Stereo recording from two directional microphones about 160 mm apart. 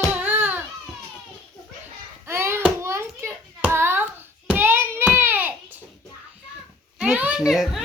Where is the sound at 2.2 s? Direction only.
15° right (ahead or behind).